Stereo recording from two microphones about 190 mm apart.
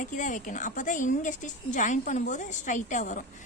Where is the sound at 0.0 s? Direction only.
40° left (ahead or behind).